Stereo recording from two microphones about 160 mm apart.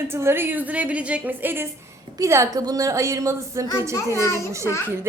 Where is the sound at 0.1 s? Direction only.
15° right (ahead or behind).